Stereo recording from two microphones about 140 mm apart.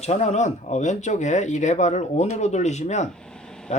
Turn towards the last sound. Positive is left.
turn(degrees=5)  # may be behind; listen again after turning